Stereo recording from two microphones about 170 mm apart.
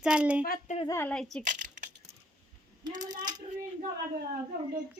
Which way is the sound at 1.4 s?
50° right (ahead or behind).